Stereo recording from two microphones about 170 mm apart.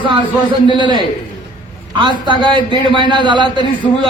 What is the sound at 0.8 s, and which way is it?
A man's voice, 25° right (ahead or behind).